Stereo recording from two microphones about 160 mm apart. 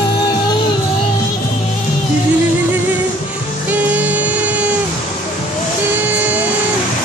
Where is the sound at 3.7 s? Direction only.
10° right (ahead or behind).